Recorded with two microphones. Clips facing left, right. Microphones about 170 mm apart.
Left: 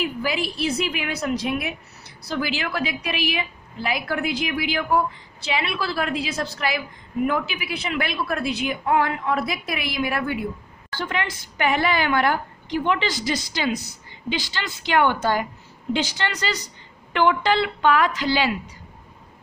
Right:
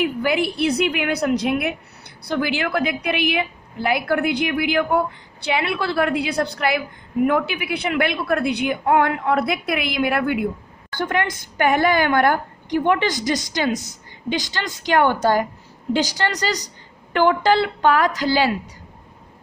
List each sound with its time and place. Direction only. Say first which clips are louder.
0.0 s a woman's voice: right 5 dB; 60° right (ahead or behind)
11.0 s a woman's voice: right 5 dB; 50° right (ahead or behind)